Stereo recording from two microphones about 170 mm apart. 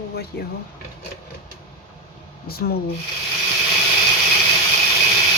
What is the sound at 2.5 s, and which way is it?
Speech, 65° left (ahead or behind).